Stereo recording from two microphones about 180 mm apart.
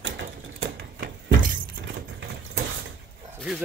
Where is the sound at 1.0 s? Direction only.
50° right (ahead or behind).